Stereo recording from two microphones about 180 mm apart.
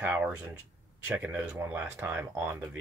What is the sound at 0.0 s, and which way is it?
Speech, 10° right (ahead or behind).